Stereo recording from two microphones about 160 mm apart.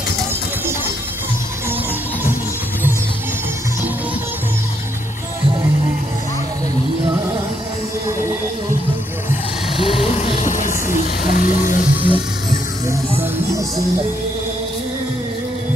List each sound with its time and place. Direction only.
9.8 s vehicle: 35° left (ahead or behind); by 11.7 s 55° left (ahead or behind)
12.0 s music: 35° right (ahead or behind)